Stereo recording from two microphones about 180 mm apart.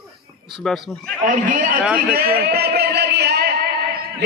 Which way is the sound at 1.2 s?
45° right (ahead or behind).